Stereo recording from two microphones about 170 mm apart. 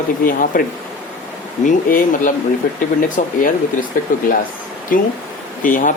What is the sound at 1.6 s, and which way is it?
Speech, 50° left (ahead or behind).